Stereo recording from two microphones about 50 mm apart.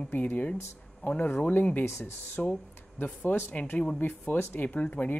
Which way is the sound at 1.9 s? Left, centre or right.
Left.